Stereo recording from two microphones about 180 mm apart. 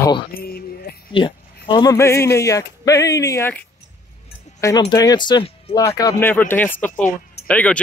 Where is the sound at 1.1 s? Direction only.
30° left (ahead or behind).